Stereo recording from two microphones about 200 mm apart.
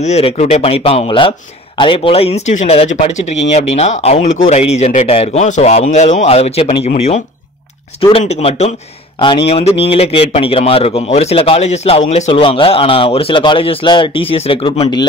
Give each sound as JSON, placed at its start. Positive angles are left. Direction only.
{"t": 0.0, "sound": "a man's voice", "side_deg": 35}
{"t": 8.0, "sound": "a man's voice", "side_deg": 30}